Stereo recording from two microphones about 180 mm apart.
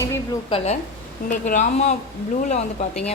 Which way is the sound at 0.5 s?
35° left (ahead or behind).